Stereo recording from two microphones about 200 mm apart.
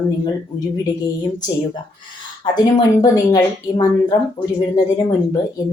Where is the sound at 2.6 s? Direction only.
20° left (ahead or behind).